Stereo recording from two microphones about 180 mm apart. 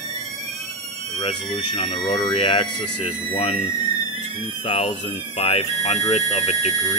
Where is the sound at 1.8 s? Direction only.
25° left (ahead or behind).